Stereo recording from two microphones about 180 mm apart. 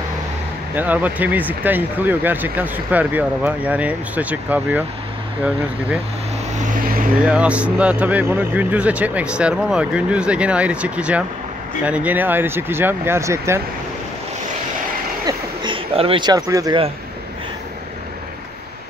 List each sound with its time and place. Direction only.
0.7 s speech: 10° right (ahead or behind)
7.2 s speech: 5° right (ahead or behind)
15.2 s a sound: 25° right (ahead or behind)